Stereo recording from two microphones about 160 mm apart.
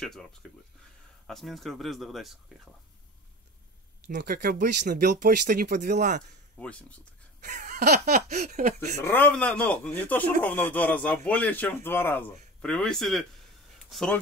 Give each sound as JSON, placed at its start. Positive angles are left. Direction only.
{"t": 0.0, "sound": "speech", "side_deg": 5}
{"t": 4.1, "sound": "speech", "side_deg": -55}
{"t": 6.6, "sound": "a man's voice", "side_deg": 5}
{"t": 7.4, "sound": "a sound", "side_deg": -55}
{"t": 8.3, "sound": "a sound", "side_deg": -45}
{"t": 9.0, "sound": "a man's voice", "side_deg": 10}